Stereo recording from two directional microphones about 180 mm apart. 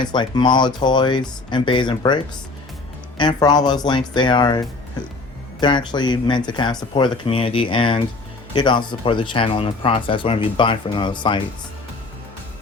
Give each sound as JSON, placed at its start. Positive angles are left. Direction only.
{"t": 0.0, "sound": "speech", "side_deg": 25}